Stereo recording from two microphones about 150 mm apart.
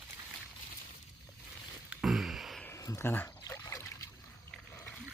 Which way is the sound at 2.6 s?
20° left (ahead or behind).